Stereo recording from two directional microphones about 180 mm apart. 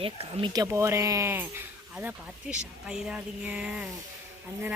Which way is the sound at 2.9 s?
5° right (ahead or behind).